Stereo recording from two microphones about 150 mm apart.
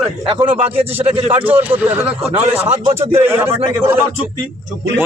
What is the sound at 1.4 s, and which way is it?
Speech, 10° right (ahead or behind).